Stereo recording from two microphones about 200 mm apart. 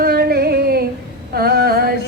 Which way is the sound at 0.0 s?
50° right (ahead or behind).